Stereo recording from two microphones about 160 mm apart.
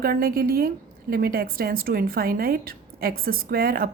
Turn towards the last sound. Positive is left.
turn(degrees=-70)  # may be behind; listen again after turning